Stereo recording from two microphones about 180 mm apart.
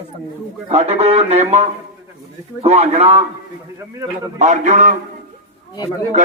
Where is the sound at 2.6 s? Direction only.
35° right (ahead or behind).